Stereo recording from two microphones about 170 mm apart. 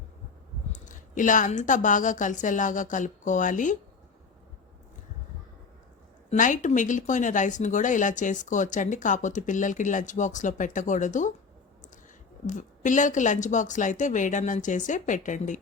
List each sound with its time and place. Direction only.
0.7 s speech: 50° left (ahead or behind)
6.3 s speech: 50° left (ahead or behind)
12.5 s speech: 45° left (ahead or behind)